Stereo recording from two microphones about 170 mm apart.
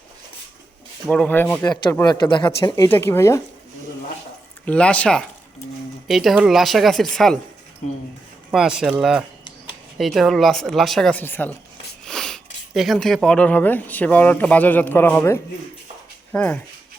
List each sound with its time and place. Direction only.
1.0 s speech: 5° left (ahead or behind)
4.6 s speech: 5° left (ahead or behind)
8.4 s speech: 5° right (ahead or behind)